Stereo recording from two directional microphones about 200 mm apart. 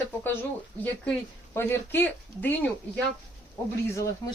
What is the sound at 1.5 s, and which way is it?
A woman's voice, 10° left (ahead or behind).